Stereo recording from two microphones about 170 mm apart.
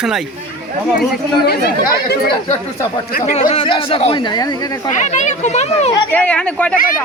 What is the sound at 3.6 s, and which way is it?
A man's voice, 30° left (ahead or behind).